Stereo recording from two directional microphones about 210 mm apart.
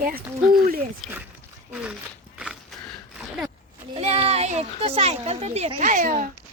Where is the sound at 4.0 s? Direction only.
30° right (ahead or behind).